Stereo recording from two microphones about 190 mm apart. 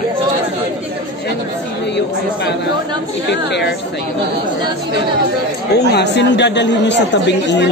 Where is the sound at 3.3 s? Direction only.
65° left (ahead or behind).